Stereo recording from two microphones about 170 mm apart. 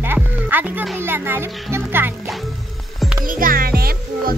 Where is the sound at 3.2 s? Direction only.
55° right (ahead or behind).